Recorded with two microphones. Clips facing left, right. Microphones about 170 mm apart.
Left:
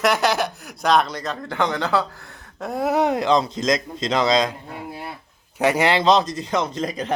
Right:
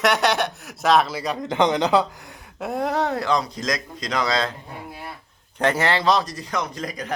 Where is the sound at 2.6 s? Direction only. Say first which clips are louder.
Left 3 dB; centre (ahead or behind); by 4.5 s 20° left (ahead or behind).